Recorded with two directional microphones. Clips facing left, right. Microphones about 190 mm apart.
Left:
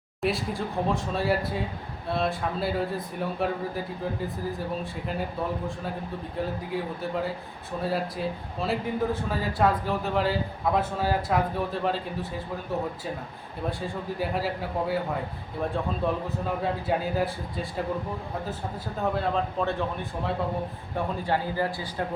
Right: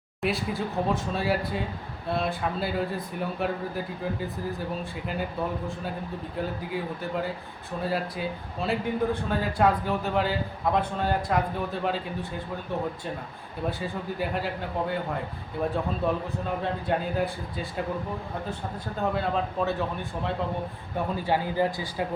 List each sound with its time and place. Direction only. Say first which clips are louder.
0.2 s speech: even; centre (ahead or behind)
13.7 s speech: even; centre (ahead or behind)
16.0 s speech: even; centre (ahead or behind)
19.1 s speech: left 1 dB; centre (ahead or behind)
21.2 s speech: right 3 dB; 15° right (ahead or behind)